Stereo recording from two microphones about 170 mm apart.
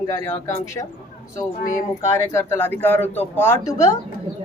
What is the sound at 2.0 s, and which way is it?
Speech, 15° left (ahead or behind).